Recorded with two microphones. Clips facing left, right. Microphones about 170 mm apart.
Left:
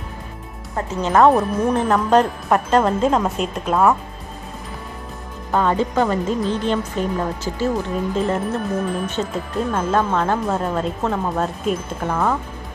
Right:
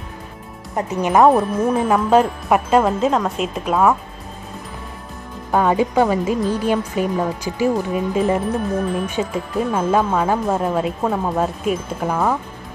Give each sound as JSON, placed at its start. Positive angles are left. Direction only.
{"t": 0.7, "sound": "speech", "side_deg": -15}
{"t": 5.5, "sound": "speech", "side_deg": -10}